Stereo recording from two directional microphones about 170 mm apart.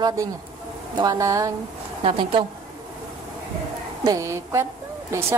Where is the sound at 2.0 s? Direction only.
30° right (ahead or behind).